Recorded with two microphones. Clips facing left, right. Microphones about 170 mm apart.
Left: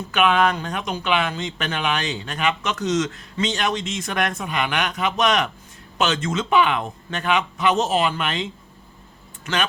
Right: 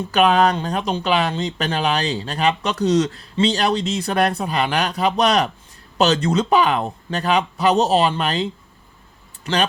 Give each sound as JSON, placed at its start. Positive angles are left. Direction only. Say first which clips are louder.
{"t": 0.1, "sound": "speech", "louder": "right 3 dB", "side_deg": -35}